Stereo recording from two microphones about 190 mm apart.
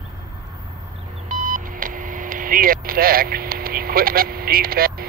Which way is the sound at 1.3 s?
40° right (ahead or behind).